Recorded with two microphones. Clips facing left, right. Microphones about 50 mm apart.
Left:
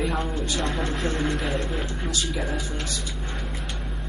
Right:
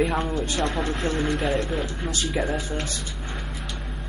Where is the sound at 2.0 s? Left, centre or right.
Right.